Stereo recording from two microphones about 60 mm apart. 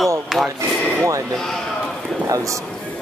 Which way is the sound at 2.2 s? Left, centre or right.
Right.